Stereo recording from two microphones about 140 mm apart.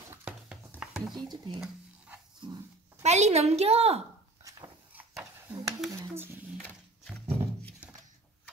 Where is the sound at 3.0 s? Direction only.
50° right (ahead or behind).